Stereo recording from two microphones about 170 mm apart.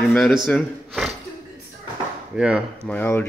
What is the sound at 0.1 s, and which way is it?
A man's voice, 5° left (ahead or behind).